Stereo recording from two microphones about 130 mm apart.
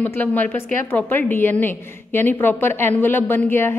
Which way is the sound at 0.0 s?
15° left (ahead or behind).